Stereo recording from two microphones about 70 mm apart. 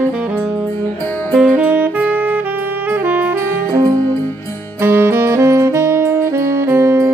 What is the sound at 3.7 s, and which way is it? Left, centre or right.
Music, right.